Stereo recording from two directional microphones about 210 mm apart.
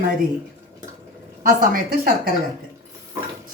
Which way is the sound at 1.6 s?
45° right (ahead or behind).